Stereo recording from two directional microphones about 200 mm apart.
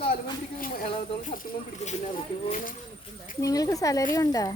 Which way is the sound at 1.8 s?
35° left (ahead or behind).